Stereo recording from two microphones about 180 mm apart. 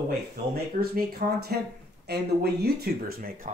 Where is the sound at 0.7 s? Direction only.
60° right (ahead or behind).